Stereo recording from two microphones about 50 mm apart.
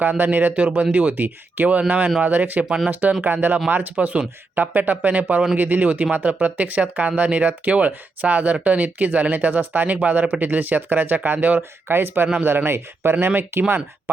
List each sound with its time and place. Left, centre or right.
0.0 s speech: right
2.6 s speech: centre
2.9 s speech: right
11.9 s speech: right